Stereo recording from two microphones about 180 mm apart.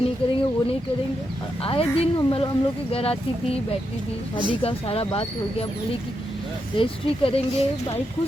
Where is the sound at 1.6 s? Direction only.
30° left (ahead or behind).